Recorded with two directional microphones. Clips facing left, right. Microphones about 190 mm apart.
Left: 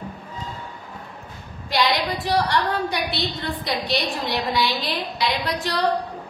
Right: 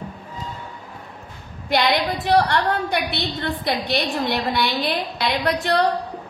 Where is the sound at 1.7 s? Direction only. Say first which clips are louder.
Right 2 dB; 55° right (ahead or behind).